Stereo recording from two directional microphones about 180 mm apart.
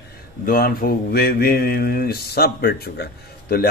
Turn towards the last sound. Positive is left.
turn(degrees=60)  # may be behind; listen again after turning